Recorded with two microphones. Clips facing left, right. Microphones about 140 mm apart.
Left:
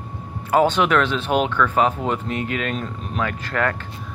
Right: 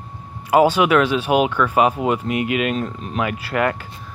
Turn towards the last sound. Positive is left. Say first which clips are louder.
# right 3 dB
turn(degrees=-15)  # may be behind; listen again after turning